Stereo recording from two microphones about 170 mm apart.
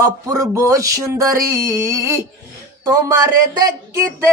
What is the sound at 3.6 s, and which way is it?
Speech, 15° right (ahead or behind).